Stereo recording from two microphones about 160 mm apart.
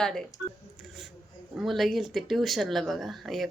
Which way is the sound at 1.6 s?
Centre (ahead or behind).